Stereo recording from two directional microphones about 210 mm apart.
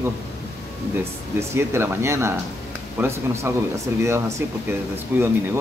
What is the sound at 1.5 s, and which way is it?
Speech, 10° right (ahead or behind).